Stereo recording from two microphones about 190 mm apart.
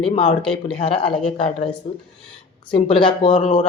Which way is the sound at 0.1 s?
30° left (ahead or behind).